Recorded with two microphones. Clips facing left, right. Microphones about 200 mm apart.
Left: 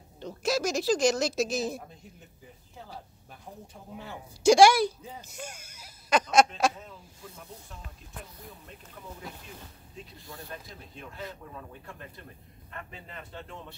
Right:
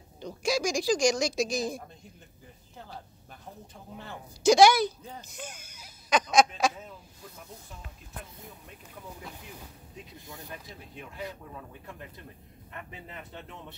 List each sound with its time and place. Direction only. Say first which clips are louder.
0.2 s speech: even; 5° left (ahead or behind)
3.9 s speech: left 1 dB; 5° left (ahead or behind)
10.1 s speech: left 1 dB; 20° right (ahead or behind)
12.7 s speech: even; 15° right (ahead or behind)